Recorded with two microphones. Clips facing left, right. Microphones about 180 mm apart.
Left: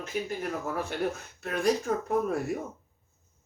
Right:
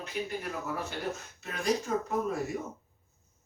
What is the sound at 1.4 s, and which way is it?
Speech, 55° left (ahead or behind).